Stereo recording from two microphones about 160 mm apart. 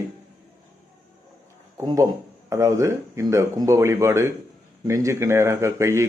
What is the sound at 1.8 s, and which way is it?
Speech, 25° right (ahead or behind).